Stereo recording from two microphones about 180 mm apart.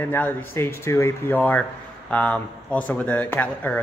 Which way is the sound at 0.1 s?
10° left (ahead or behind).